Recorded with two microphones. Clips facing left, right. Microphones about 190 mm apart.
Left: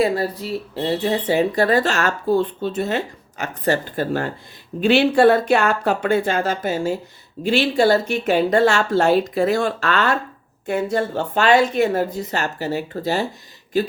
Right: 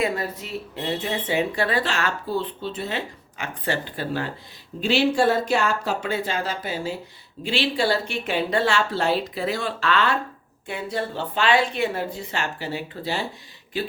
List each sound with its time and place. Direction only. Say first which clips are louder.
0.0 s speech: left 6 dB; 35° left (ahead or behind)
4.8 s speech: left 6 dB; 60° left (ahead or behind); by 13.9 s 40° left (ahead or behind)